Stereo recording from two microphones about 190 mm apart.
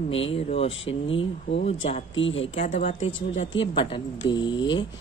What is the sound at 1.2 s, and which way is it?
Speech, 70° left (ahead or behind).